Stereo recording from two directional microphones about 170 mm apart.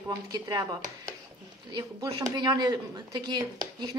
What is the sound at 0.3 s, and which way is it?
Speech, 25° right (ahead or behind).